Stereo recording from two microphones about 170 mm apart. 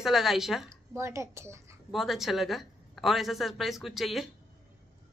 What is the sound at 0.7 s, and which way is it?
A woman's voice, 15° right (ahead or behind).